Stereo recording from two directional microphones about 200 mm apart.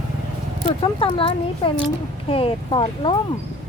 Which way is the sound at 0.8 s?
25° left (ahead or behind).